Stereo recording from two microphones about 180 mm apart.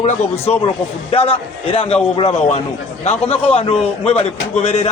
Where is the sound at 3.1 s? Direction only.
35° left (ahead or behind).